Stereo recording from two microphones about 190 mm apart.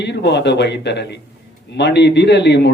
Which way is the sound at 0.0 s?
65° left (ahead or behind).